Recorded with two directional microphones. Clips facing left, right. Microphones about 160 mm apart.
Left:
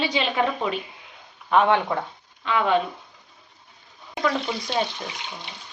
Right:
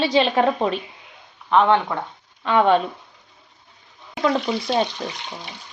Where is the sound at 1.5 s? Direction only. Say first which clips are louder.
Right 2 dB; 10° left (ahead or behind).